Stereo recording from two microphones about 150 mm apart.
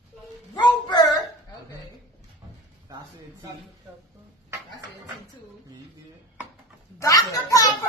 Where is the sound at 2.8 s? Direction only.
25° right (ahead or behind).